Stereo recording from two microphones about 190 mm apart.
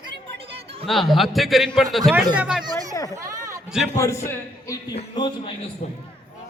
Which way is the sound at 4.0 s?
15° left (ahead or behind).